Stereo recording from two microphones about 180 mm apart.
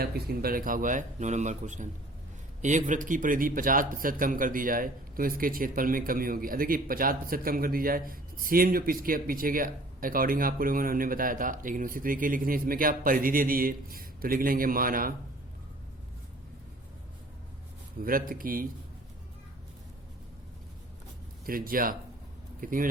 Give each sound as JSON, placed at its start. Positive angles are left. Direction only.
{"t": 0.0, "sound": "a man's voice", "side_deg": -60}
{"t": 18.0, "sound": "a man's voice", "side_deg": -50}
{"t": 21.4, "sound": "a man's voice", "side_deg": -50}